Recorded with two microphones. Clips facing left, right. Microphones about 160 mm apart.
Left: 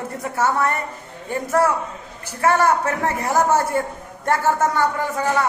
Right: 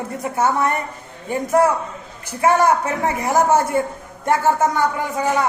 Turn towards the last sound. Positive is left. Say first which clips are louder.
# right 1 dB
turn(degrees=-15)  # may be behind; listen again after turning